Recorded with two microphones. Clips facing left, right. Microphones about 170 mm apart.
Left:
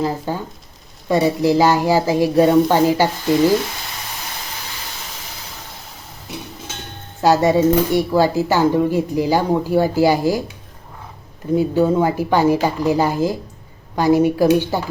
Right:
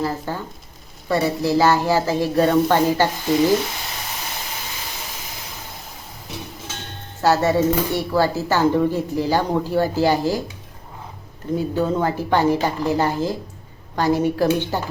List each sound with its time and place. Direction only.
0.0 s speech: 15° left (ahead or behind)
7.2 s speech: 15° left (ahead or behind)
11.5 s speech: 10° left (ahead or behind)